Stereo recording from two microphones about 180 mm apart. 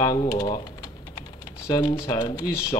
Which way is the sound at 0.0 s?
20° left (ahead or behind).